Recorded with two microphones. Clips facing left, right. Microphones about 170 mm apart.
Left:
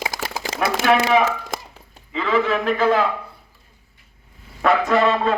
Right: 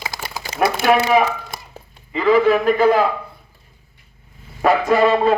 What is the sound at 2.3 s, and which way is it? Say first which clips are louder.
Music: right 5 dB; 10° right (ahead or behind).